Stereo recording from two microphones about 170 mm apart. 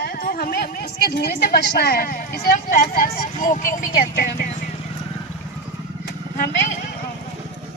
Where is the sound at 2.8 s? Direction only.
60° left (ahead or behind).